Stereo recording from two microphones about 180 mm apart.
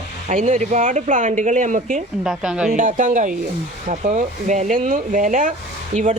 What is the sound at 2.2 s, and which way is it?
Speech, 5° right (ahead or behind).